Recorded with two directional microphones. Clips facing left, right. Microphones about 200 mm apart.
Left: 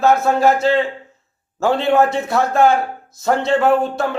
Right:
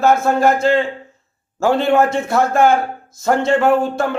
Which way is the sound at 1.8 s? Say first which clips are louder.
Even; centre (ahead or behind).